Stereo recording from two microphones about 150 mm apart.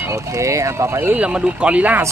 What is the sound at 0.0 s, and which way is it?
Speech, 20° right (ahead or behind).